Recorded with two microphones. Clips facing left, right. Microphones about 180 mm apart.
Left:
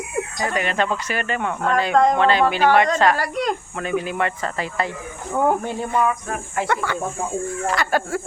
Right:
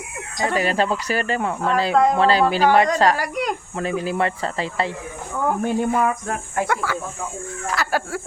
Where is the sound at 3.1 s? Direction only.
10° right (ahead or behind).